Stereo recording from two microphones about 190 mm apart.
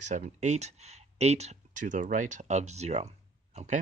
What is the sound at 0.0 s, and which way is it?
Speech, 40° right (ahead or behind).